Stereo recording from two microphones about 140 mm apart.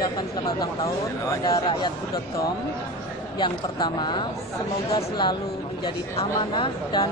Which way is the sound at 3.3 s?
30° left (ahead or behind).